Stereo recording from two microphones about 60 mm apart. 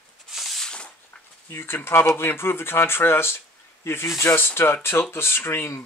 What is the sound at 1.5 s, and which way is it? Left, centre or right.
Speech, left.